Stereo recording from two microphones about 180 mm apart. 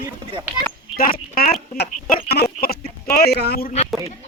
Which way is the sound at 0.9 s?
55° left (ahead or behind).